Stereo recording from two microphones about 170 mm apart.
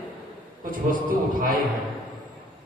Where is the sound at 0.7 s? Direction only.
55° right (ahead or behind).